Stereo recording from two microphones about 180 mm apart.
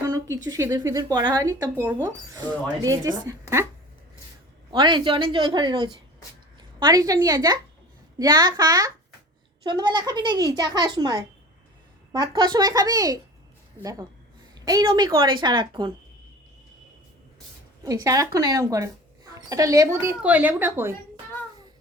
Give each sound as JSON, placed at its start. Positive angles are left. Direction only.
{"t": 0.0, "sound": "a sound", "side_deg": -20}
{"t": 0.4, "sound": "speech", "side_deg": -20}
{"t": 4.7, "sound": "a woman's voice", "side_deg": -25}
{"t": 14.5, "sound": "speech", "side_deg": -20}
{"t": 17.8, "sound": "a woman's voice", "side_deg": -20}